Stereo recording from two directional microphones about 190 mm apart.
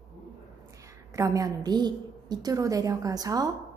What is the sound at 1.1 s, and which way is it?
A woman's voice, 15° right (ahead or behind).